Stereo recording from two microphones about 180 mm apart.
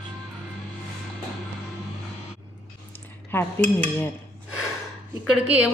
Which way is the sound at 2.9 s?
10° left (ahead or behind).